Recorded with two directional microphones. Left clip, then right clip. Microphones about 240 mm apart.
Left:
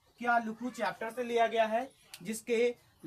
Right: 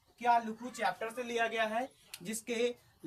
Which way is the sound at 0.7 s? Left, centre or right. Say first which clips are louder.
Even; centre.